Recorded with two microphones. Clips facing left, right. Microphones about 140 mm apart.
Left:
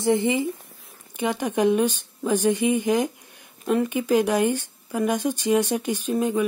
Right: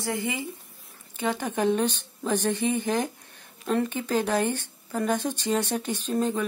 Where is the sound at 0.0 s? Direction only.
20° left (ahead or behind).